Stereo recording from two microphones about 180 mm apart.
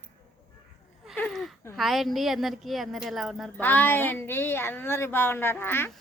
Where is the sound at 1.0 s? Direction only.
5° left (ahead or behind).